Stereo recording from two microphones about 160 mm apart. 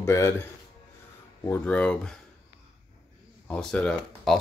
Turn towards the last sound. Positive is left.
turn(degrees=5)  # may be behind; listen again after turning